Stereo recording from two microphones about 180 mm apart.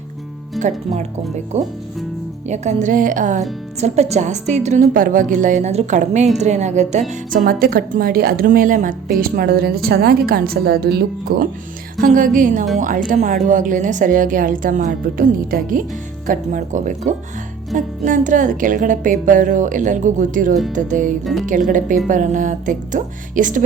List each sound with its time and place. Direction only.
0.6 s music: centre (ahead or behind)
1.5 s a woman's voice: 40° right (ahead or behind); by 11.4 s 60° right (ahead or behind)
11.9 s speech: 45° right (ahead or behind)